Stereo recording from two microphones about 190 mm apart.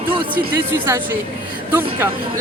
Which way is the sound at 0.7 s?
15° right (ahead or behind).